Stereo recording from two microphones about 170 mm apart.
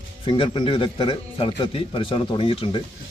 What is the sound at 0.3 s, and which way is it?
A man's voice, 30° left (ahead or behind).